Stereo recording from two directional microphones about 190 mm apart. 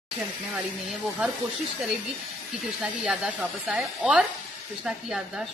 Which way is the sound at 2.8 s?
5° right (ahead or behind).